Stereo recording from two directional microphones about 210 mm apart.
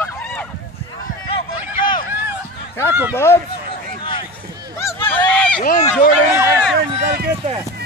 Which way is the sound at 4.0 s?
25° left (ahead or behind).